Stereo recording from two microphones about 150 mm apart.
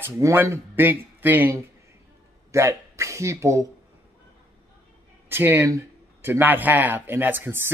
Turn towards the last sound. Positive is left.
turn(degrees=-15)  # may be behind; listen again after turning